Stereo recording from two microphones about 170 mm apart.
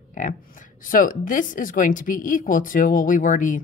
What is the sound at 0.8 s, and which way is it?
A woman's voice, 55° left (ahead or behind).